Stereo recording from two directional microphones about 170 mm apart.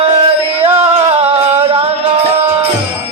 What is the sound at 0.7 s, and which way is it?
Music, 35° right (ahead or behind).